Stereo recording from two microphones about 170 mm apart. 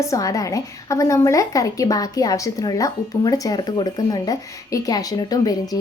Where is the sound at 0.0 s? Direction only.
20° left (ahead or behind).